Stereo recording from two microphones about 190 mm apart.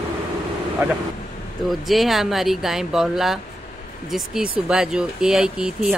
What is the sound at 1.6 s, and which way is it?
Speech, centre (ahead or behind).